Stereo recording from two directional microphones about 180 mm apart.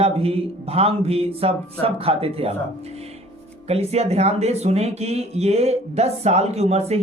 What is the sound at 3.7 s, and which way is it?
Speech, 35° right (ahead or behind).